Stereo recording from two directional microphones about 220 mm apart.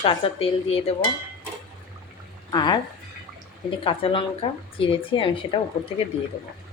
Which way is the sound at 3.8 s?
25° left (ahead or behind).